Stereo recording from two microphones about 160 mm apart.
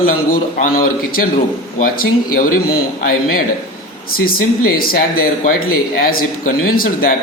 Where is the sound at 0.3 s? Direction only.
65° left (ahead or behind).